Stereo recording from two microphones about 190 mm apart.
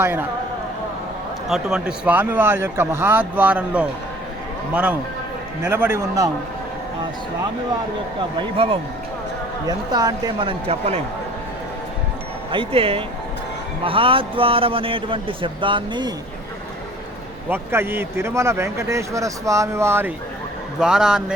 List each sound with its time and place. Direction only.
0.0 s speech: 10° right (ahead or behind)
1.5 s speech: centre (ahead or behind)
8.5 s a man's voice: 30° right (ahead or behind)
10.7 s speech: 35° right (ahead or behind)
12.5 s a man's voice: 30° right (ahead or behind)
17.5 s a man's voice: 10° right (ahead or behind)